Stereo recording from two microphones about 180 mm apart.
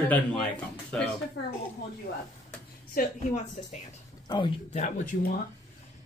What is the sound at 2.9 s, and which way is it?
Speech, 40° left (ahead or behind).